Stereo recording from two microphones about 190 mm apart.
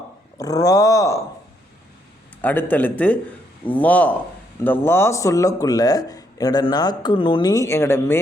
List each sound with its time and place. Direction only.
0.3 s speech: 20° left (ahead or behind)
2.4 s speech: 10° left (ahead or behind)